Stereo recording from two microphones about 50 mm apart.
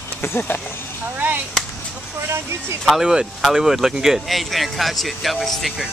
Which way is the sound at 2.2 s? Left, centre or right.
Right.